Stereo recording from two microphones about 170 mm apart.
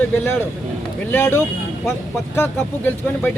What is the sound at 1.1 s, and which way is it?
Speech, 15° left (ahead or behind).